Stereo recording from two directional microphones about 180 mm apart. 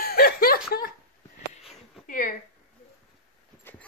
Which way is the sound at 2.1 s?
45° left (ahead or behind).